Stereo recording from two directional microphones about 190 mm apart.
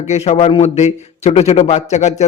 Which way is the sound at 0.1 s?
35° left (ahead or behind).